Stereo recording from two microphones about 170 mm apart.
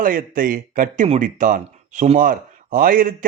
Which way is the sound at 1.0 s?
45° right (ahead or behind).